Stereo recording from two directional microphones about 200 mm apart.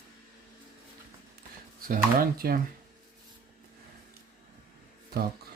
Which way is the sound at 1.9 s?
45° right (ahead or behind).